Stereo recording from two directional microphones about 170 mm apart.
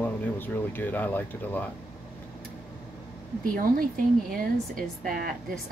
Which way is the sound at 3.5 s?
55° right (ahead or behind).